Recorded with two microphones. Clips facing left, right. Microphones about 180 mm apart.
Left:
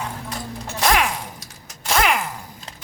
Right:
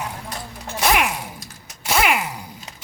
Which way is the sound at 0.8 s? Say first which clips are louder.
Even; 5° right (ahead or behind).